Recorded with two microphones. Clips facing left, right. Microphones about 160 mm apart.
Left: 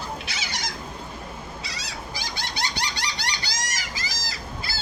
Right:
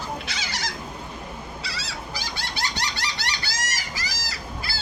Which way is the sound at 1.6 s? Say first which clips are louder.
Right 1 dB; 15° left (ahead or behind).